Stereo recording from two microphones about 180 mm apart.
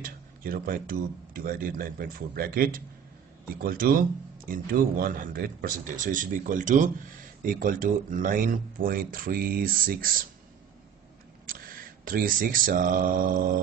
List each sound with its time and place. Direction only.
0.0 s speech: 55° right (ahead or behind)
11.4 s speech: 50° right (ahead or behind)